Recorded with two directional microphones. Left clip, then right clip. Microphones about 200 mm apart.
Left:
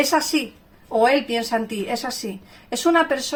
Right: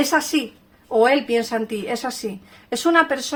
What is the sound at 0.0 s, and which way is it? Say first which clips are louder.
Speech: even; 40° right (ahead or behind).